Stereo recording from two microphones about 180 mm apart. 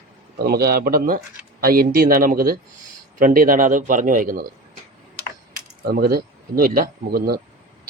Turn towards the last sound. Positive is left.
turn(degrees=-60)  # may be behind; listen again after turning